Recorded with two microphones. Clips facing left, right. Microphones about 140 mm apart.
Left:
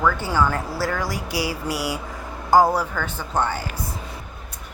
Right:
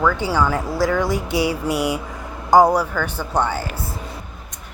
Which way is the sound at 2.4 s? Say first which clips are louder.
Right 3 dB; 20° right (ahead or behind).